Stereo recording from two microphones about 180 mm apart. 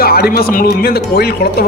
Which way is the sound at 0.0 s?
55° left (ahead or behind).